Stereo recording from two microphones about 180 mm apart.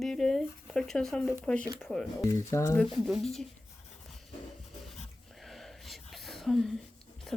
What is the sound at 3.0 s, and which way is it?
Speech, centre (ahead or behind).